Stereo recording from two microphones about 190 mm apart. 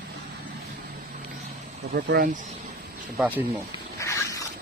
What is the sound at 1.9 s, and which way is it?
Speech, 55° right (ahead or behind).